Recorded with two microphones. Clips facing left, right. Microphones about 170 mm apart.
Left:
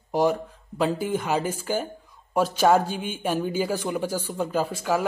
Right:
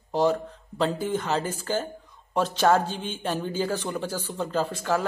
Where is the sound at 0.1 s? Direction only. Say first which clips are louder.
Left 1 dB; 10° left (ahead or behind).